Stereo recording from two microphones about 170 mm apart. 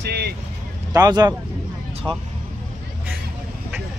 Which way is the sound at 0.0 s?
70° right (ahead or behind).